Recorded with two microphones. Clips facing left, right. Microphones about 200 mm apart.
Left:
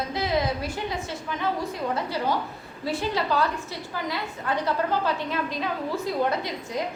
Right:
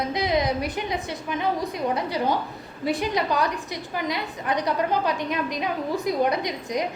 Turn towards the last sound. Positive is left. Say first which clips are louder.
# right 3 dB
turn(degrees=-15)  # may be behind; listen again after turning